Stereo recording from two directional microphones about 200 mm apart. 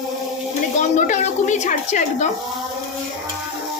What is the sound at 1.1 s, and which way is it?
A woman's voice, 35° left (ahead or behind).